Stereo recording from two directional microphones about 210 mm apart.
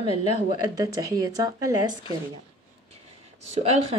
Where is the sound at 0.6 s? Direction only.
15° right (ahead or behind).